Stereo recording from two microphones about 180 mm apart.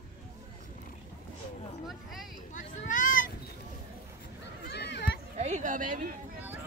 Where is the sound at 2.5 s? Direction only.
45° left (ahead or behind).